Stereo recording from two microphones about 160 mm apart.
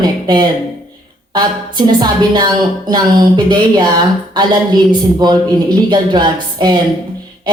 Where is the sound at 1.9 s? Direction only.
25° right (ahead or behind).